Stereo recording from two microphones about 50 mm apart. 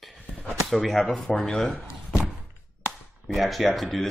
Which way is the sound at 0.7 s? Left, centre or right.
Centre.